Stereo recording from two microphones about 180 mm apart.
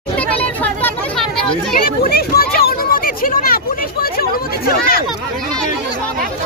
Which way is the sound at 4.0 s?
55° left (ahead or behind).